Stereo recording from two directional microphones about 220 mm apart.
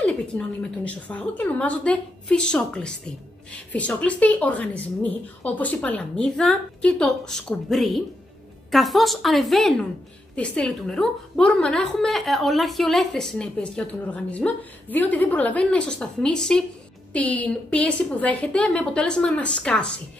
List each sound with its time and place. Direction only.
0.0 s a woman's voice: 5° left (ahead or behind)